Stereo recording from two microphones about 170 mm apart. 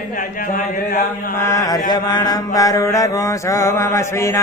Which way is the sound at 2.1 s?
25° left (ahead or behind).